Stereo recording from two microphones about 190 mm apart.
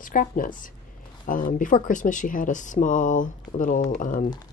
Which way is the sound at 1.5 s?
45° left (ahead or behind).